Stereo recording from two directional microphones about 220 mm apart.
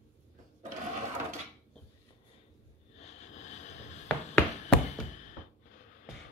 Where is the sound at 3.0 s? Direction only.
30° left (ahead or behind).